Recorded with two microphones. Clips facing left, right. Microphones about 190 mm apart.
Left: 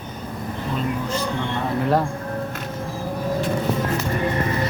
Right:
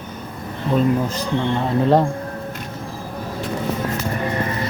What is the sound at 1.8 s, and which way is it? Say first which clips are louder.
Speech: right 5 dB; 20° right (ahead or behind).